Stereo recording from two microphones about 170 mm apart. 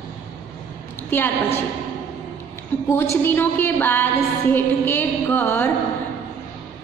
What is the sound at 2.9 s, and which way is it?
Music, 15° left (ahead or behind).